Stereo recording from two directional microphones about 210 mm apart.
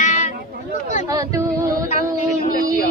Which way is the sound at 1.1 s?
15° right (ahead or behind).